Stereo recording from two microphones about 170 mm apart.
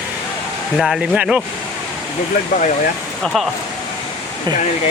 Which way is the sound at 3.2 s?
Centre (ahead or behind).